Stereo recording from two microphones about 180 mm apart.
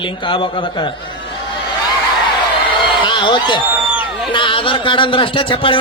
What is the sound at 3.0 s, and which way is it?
A man's voice, 25° left (ahead or behind).